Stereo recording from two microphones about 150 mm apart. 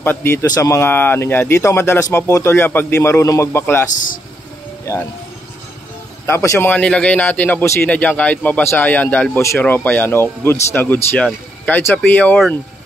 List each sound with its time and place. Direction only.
0.0 s a man's voice: 15° left (ahead or behind)
3.9 s speech: 60° left (ahead or behind)
6.2 s a man's voice: 20° left (ahead or behind)